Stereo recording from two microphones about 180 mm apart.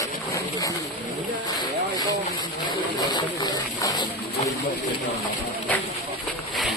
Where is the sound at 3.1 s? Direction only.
25° left (ahead or behind).